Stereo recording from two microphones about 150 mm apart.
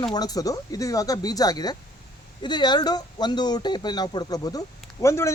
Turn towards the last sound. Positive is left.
turn(degrees=20)  # may be behind; listen again after turning